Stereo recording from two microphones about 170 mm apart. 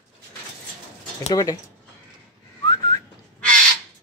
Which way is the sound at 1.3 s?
20° left (ahead or behind).